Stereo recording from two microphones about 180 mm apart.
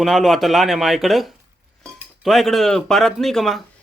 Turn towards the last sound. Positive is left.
turn(degrees=0)  # may be behind; listen again after turning